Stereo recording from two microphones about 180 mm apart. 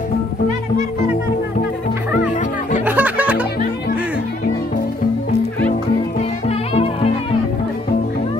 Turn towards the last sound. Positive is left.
turn(degrees=35)  # may be behind; listen again after turning